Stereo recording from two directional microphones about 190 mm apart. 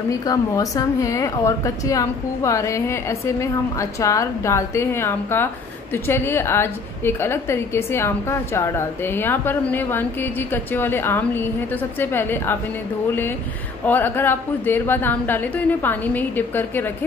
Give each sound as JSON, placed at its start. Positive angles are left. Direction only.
{"t": 0.2, "sound": "a woman's voice", "side_deg": 20}
{"t": 13.8, "sound": "a woman's voice", "side_deg": 10}